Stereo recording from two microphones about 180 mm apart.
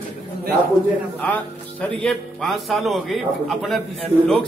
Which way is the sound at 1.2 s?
5° left (ahead or behind).